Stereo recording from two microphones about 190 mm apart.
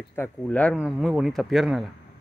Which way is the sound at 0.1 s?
10° left (ahead or behind).